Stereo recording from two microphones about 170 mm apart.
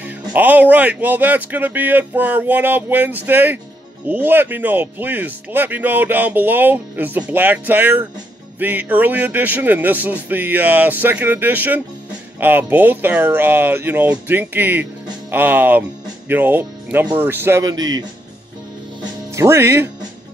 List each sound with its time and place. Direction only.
0.0 s speech: 10° right (ahead or behind)
19.3 s speech: 15° right (ahead or behind)